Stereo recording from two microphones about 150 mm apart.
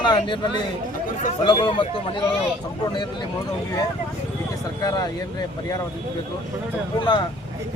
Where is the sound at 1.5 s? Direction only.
30° left (ahead or behind).